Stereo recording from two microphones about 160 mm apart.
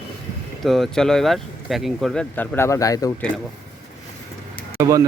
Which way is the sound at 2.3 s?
10° left (ahead or behind).